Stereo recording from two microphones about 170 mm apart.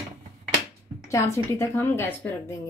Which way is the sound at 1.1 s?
15° left (ahead or behind).